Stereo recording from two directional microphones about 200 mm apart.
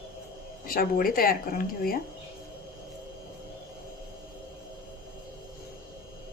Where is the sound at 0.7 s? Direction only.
45° left (ahead or behind).